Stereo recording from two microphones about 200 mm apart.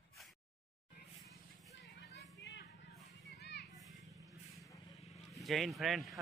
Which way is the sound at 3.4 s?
55° left (ahead or behind).